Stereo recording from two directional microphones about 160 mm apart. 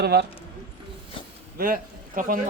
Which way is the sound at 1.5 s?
65° right (ahead or behind).